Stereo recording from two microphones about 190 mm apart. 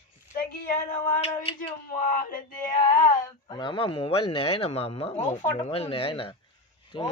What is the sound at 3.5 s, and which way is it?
Speech, 25° left (ahead or behind).